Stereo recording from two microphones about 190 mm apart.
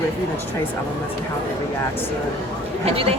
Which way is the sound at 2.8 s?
30° right (ahead or behind).